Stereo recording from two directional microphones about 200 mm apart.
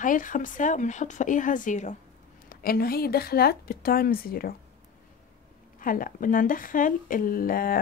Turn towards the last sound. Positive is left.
turn(degrees=45)  # may be behind; listen again after turning